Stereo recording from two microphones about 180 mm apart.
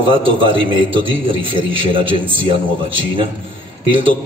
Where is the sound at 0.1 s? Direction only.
30° right (ahead or behind).